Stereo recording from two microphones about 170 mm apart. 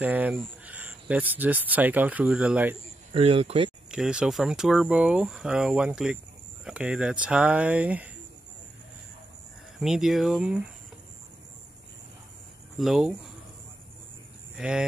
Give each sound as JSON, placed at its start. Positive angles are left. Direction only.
{"t": 0.0, "sound": "speech", "side_deg": -10}
{"t": 3.1, "sound": "speech", "side_deg": -35}
{"t": 3.9, "sound": "speech", "side_deg": -5}
{"t": 9.8, "sound": "speech", "side_deg": -5}
{"t": 12.7, "sound": "speech", "side_deg": 0}
{"t": 14.6, "sound": "speech", "side_deg": -5}